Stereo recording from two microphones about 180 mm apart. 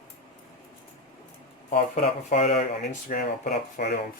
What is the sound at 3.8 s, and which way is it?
Speech, 65° left (ahead or behind).